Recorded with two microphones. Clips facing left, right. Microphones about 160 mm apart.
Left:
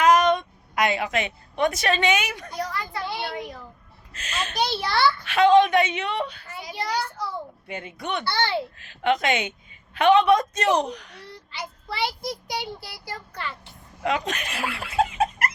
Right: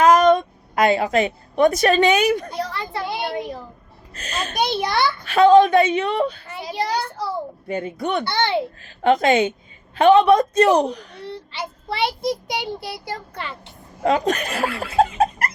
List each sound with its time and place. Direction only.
0.0 s a woman's voice: 35° right (ahead or behind)
4.1 s a child's voice: 35° right (ahead or behind)
4.5 s a child's voice: 20° right (ahead or behind)
5.2 s a child's voice: 35° right (ahead or behind)
7.7 s a child's voice: 35° right (ahead or behind)
8.2 s a child's voice: 20° right (ahead or behind)
8.8 s a child's voice: 35° right (ahead or behind)
14.0 s speech: 35° right (ahead or behind)